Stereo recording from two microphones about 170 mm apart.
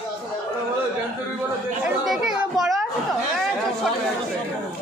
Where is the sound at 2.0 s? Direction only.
Centre (ahead or behind).